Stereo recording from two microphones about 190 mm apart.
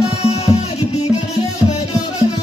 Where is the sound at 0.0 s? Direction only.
35° left (ahead or behind).